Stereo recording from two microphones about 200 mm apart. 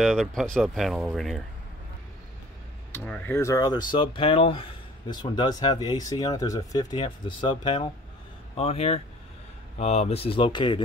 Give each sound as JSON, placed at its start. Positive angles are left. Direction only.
{"t": 0.0, "sound": "speech", "side_deg": 0}
{"t": 2.9, "sound": "speech", "side_deg": 10}